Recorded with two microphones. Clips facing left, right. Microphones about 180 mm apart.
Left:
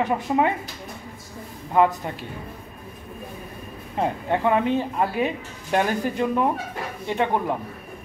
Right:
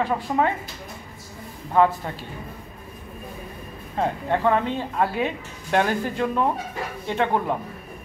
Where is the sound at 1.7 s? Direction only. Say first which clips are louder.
Even; 15° left (ahead or behind).